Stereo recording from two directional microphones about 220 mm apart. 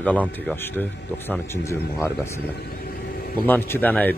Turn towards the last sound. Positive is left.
turn(degrees=5)  # may be behind; listen again after turning